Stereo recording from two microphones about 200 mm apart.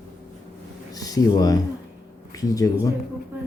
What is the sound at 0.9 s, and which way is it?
Speech, 20° left (ahead or behind).